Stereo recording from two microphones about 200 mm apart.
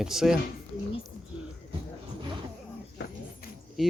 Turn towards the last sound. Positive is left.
turn(degrees=0)  # may be behind; listen again after turning